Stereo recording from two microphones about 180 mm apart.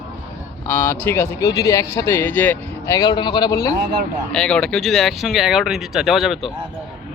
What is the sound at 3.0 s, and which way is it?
Speech, 25° left (ahead or behind).